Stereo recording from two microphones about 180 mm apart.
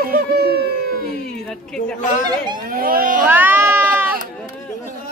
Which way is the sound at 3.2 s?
10° right (ahead or behind).